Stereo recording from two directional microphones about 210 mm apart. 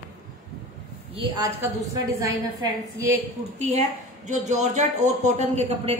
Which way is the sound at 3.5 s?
35° right (ahead or behind).